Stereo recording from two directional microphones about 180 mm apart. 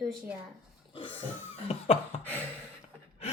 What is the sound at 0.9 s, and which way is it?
Pig, 30° left (ahead or behind).